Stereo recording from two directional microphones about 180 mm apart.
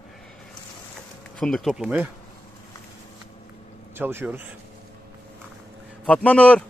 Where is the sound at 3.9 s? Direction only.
15° right (ahead or behind).